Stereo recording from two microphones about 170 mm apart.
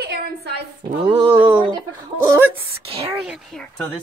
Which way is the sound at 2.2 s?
15° right (ahead or behind).